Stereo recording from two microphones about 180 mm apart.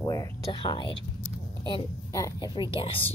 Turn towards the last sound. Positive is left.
turn(degrees=30)  # may be behind; listen again after turning